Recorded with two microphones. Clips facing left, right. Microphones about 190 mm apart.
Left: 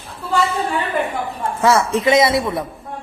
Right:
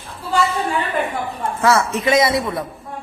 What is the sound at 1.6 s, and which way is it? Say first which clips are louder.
A man's voice: left 2 dB; 30° left (ahead or behind).